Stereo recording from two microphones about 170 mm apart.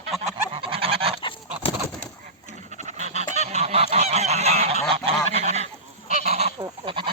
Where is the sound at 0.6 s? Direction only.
35° right (ahead or behind).